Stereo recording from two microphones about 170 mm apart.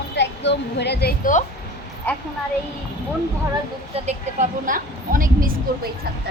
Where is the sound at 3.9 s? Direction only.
45° right (ahead or behind).